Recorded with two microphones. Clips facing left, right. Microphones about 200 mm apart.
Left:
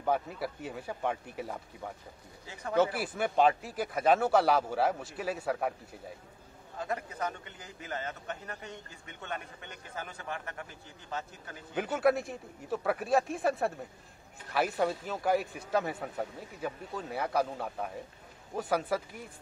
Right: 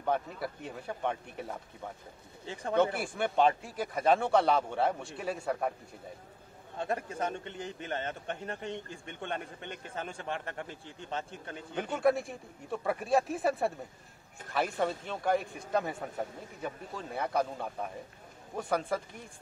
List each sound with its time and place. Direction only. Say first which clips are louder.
0.0 s speech: left 1 dB; 5° left (ahead or behind)
2.4 s a man's voice: right 3 dB; 30° right (ahead or behind)
2.7 s speech: even; 5° left (ahead or behind)
6.8 s a man's voice: right 2 dB; 30° right (ahead or behind)
11.7 s speech: left 1 dB; 5° left (ahead or behind)